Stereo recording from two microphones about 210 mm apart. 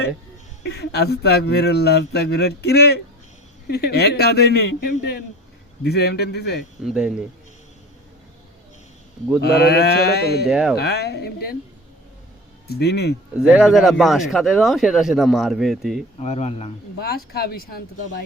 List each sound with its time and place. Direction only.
0.6 s speech: 55° left (ahead or behind)
6.8 s speech: 5° right (ahead or behind)
9.4 s speech: 50° left (ahead or behind)
10.4 s speech: 5° right (ahead or behind)
10.8 s speech: 50° left (ahead or behind)
12.6 s speech: 50° left (ahead or behind)
13.4 s speech: 5° right (ahead or behind)
16.1 s speech: 30° left (ahead or behind)
17.0 s speech: 45° left (ahead or behind)